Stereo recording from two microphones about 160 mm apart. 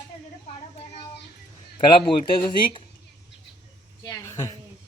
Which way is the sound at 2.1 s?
35° left (ahead or behind).